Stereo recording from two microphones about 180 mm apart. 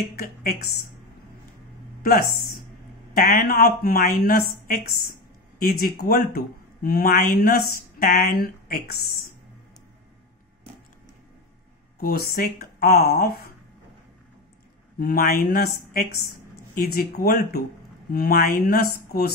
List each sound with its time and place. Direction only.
0.1 s speech: 55° left (ahead or behind)
2.0 s speech: 55° left (ahead or behind)
12.0 s speech: 55° left (ahead or behind)
15.0 s speech: 55° left (ahead or behind)